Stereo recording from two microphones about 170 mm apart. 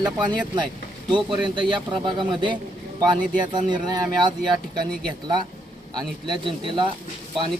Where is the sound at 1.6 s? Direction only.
30° right (ahead or behind).